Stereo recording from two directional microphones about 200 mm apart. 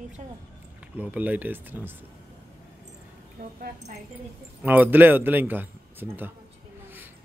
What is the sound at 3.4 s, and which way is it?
Speech, 50° right (ahead or behind).